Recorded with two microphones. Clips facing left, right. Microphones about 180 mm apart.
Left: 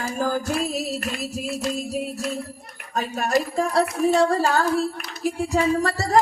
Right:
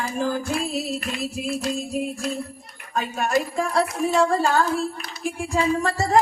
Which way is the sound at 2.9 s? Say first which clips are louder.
Even; 35° left (ahead or behind).